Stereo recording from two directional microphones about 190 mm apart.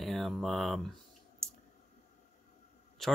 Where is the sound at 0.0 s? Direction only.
Centre (ahead or behind).